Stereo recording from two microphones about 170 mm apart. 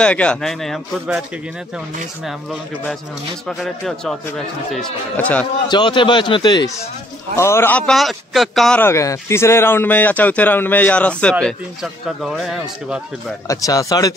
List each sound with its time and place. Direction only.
0.0 s a man's voice: 5° left (ahead or behind)
3.4 s a man's voice: centre (ahead or behind)
5.7 s a man's voice: 25° left (ahead or behind); by 8.8 s centre (ahead or behind)
8.8 s a man's voice: 15° left (ahead or behind); by 13.0 s centre (ahead or behind)
13.5 s a man's voice: 20° left (ahead or behind)